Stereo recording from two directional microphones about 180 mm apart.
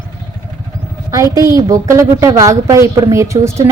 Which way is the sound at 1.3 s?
15° right (ahead or behind).